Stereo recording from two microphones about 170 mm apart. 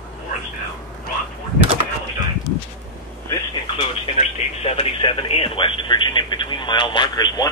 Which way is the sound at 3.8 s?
40° left (ahead or behind).